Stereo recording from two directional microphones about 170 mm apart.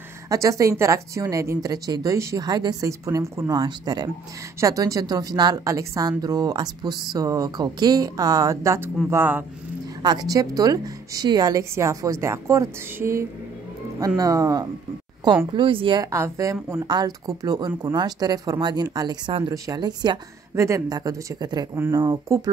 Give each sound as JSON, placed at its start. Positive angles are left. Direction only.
{"t": 0.3, "sound": "speech", "side_deg": -20}
{"t": 10.0, "sound": "speech", "side_deg": -20}
{"t": 16.1, "sound": "speech", "side_deg": -15}
{"t": 21.7, "sound": "speech", "side_deg": -15}